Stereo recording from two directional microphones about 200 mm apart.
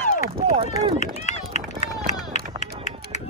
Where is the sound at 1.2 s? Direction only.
35° left (ahead or behind).